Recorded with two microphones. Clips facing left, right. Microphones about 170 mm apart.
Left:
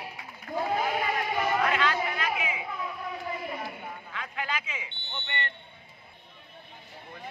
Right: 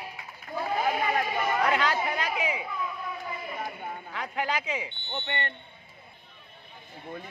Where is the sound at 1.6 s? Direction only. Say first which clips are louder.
Right 1 dB; 35° right (ahead or behind).